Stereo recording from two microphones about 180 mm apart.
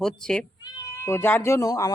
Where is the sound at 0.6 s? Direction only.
15° left (ahead or behind).